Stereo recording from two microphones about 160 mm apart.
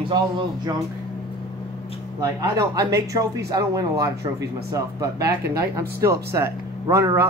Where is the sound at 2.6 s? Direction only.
20° right (ahead or behind).